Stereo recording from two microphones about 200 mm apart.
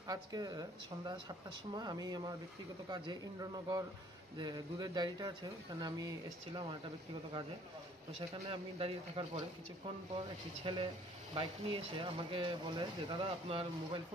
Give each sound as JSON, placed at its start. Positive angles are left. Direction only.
{"t": 0.0, "sound": "speech", "side_deg": -20}
{"t": 8.5, "sound": "speech", "side_deg": -30}
{"t": 10.6, "sound": "speech", "side_deg": -25}